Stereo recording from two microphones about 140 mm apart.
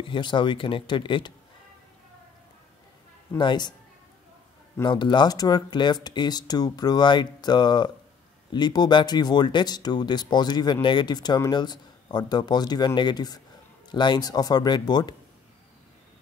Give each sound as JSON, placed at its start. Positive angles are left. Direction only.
{"t": 0.0, "sound": "speech", "side_deg": 35}
{"t": 3.3, "sound": "speech", "side_deg": 30}
{"t": 4.8, "sound": "a man's voice", "side_deg": 30}